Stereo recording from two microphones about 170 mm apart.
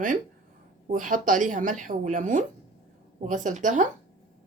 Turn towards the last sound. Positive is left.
turn(degrees=-45)  # may be behind; listen again after turning